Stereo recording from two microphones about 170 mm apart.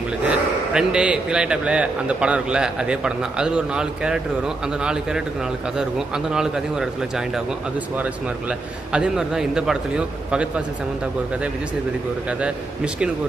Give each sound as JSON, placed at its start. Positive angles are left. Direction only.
{"t": 0.3, "sound": "a man's voice", "side_deg": -5}
{"t": 12.3, "sound": "a man's voice", "side_deg": -5}